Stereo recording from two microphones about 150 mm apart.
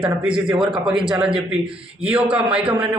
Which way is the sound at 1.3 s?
40° right (ahead or behind).